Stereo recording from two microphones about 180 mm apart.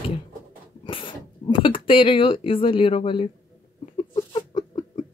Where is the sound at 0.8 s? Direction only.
30° left (ahead or behind).